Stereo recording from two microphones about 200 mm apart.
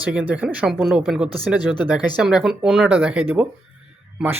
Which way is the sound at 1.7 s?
20° left (ahead or behind).